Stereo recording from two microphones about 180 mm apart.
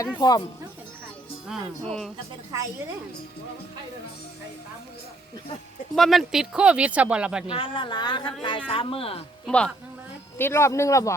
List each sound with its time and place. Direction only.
0.2 s speech: 25° left (ahead or behind)
1.5 s speech: centre (ahead or behind)
5.9 s speech: centre (ahead or behind)
7.5 s speech: 30° left (ahead or behind)
9.5 s speech: 5° left (ahead or behind)